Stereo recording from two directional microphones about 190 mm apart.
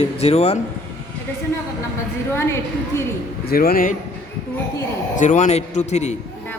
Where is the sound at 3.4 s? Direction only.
50° left (ahead or behind).